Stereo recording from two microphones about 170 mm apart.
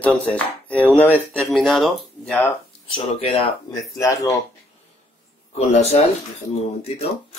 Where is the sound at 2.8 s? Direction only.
30° left (ahead or behind).